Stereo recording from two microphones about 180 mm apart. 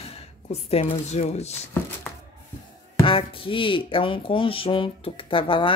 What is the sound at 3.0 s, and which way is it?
Speech, 30° left (ahead or behind).